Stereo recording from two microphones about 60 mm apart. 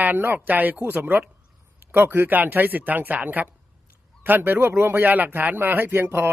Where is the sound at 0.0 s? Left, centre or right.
Right.